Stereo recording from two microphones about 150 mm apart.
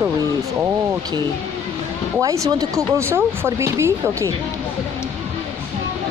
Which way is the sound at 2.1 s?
20° right (ahead or behind).